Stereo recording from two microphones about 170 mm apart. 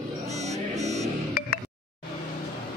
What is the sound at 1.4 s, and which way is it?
Music, 60° left (ahead or behind).